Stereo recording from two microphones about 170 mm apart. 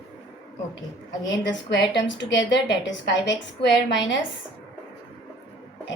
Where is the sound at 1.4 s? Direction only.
90° left.